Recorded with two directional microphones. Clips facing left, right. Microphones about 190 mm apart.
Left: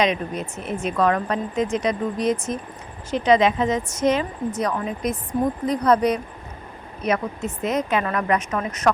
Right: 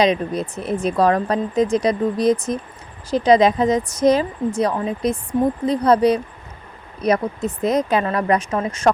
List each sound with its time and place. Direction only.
0.0 s speech: 35° right (ahead or behind)